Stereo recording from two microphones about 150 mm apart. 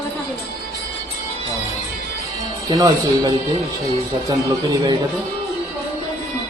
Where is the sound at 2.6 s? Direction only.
25° right (ahead or behind).